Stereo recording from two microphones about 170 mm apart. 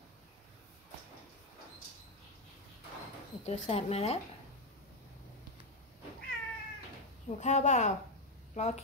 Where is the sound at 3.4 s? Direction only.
40° left (ahead or behind).